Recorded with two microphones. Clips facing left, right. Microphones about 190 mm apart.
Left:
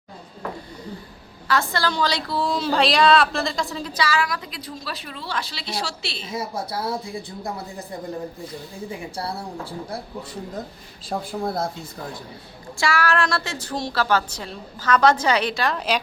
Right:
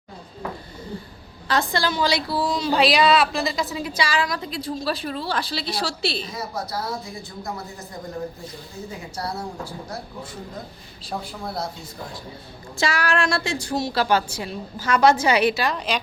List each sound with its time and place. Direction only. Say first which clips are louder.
1.5 s a woman's voice: even; 15° right (ahead or behind); by 6.2 s 35° right (ahead or behind)
6.2 s a woman's voice: left 2 dB; 25° left (ahead or behind)
9.1 s a woman's voice: right 4 dB; 30° left (ahead or behind)
11.2 s speech: left 6 dB; 50° left (ahead or behind)
12.7 s a woman's voice: left 1 dB; 20° right (ahead or behind); by 16.0 s centre (ahead or behind)